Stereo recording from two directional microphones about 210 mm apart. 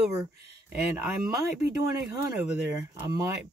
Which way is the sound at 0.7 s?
10° right (ahead or behind).